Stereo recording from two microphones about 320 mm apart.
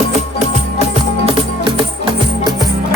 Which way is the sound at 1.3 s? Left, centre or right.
Centre.